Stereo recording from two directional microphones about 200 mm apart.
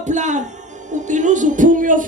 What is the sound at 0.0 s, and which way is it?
Speech, 35° right (ahead or behind).